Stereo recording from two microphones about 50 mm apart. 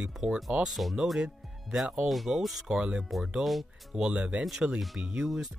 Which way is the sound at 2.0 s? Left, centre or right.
Centre.